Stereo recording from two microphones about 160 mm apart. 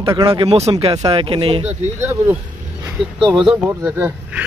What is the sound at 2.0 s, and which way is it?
Speech, 15° right (ahead or behind).